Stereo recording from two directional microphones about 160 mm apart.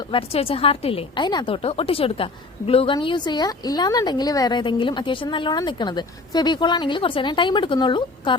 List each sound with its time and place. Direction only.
0.1 s a woman's voice: 35° left (ahead or behind)